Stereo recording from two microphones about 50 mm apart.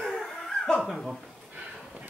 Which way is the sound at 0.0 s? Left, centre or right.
Centre.